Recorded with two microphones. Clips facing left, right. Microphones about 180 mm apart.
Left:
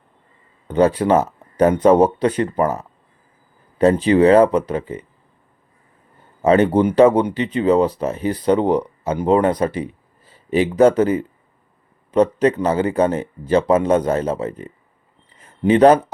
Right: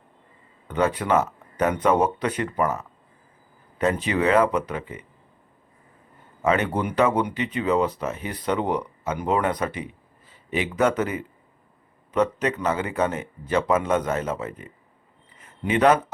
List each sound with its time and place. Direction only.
0.7 s speech: 35° left (ahead or behind)
6.4 s speech: 35° left (ahead or behind)